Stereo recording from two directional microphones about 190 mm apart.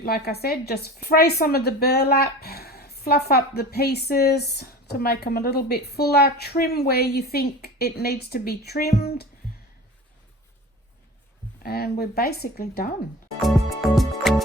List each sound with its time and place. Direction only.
0.0 s a woman's voice: 55° left (ahead or behind)
11.6 s speech: 55° left (ahead or behind)
13.4 s music: centre (ahead or behind)